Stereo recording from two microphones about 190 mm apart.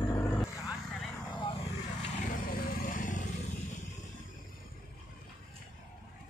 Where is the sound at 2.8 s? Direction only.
45° left (ahead or behind).